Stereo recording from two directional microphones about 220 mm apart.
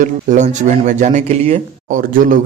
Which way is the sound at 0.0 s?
35° right (ahead or behind).